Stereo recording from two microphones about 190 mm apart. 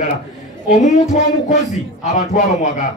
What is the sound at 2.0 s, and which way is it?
Speech, 40° left (ahead or behind).